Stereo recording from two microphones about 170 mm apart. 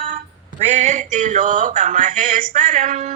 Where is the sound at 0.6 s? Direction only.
45° right (ahead or behind).